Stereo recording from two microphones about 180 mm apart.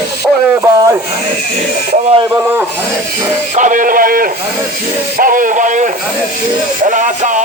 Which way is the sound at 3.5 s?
45° right (ahead or behind).